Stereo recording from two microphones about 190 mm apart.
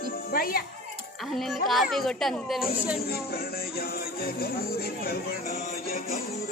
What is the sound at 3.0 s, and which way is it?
Speech, 55° left (ahead or behind).